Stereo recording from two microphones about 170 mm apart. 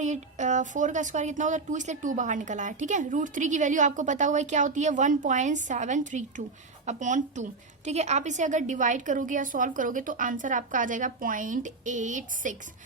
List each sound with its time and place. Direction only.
0.0 s a woman's voice: 45° right (ahead or behind)